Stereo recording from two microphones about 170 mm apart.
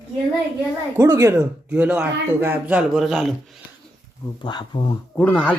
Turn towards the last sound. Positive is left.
turn(degrees=10)  # may be behind; listen again after turning